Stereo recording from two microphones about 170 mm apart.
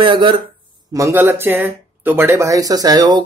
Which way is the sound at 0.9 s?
15° right (ahead or behind).